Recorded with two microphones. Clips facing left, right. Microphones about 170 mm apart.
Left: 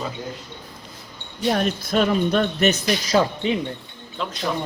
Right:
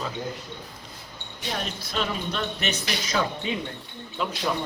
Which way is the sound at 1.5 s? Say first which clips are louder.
Left 9 dB; 55° left (ahead or behind).